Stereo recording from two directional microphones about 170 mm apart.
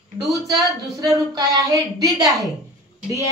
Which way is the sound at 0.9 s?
20° right (ahead or behind).